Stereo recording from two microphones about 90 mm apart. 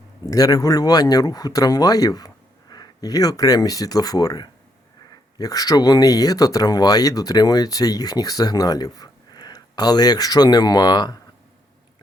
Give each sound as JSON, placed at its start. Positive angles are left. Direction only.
{"t": 0.3, "sound": "speech", "side_deg": 45}